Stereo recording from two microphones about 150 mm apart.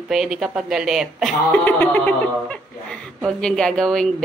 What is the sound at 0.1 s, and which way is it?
A woman's voice, centre (ahead or behind).